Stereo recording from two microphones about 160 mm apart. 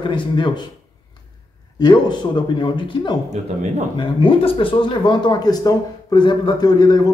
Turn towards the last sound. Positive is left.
turn(degrees=25)  # may be behind; listen again after turning